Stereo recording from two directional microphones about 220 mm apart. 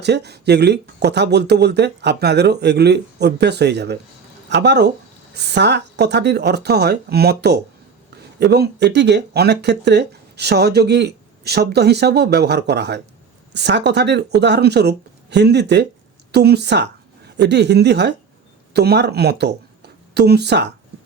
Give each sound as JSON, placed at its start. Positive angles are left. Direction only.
{"t": 0.0, "sound": "speech", "side_deg": -50}